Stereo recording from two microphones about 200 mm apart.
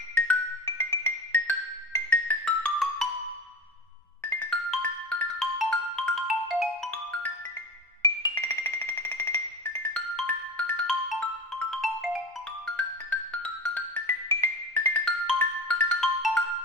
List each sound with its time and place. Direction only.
0.1 s music: 10° left (ahead or behind)
4.2 s marimba: 10° left (ahead or behind)
8.0 s music: 15° left (ahead or behind)
10.1 s marimba: 5° left (ahead or behind)